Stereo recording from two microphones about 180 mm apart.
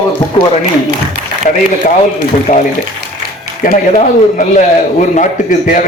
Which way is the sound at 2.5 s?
40° left (ahead or behind).